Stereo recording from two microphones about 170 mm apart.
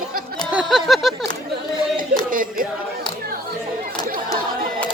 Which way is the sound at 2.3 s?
55° right (ahead or behind).